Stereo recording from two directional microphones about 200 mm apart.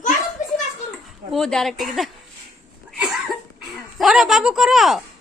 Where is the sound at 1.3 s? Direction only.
Centre (ahead or behind).